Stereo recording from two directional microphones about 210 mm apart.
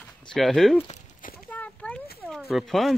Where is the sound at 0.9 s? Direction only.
40° left (ahead or behind).